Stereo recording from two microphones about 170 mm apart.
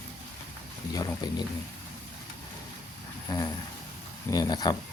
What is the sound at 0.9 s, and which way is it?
Speech, 25° left (ahead or behind).